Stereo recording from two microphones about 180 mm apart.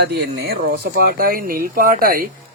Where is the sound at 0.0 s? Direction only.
60° right (ahead or behind).